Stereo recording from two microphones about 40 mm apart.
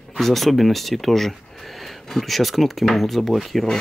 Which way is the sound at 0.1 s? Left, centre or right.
Centre.